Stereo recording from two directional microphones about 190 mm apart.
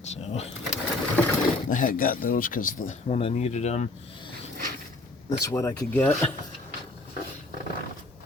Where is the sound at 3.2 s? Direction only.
30° left (ahead or behind).